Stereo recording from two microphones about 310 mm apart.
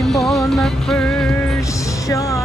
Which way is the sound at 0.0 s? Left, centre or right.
Centre.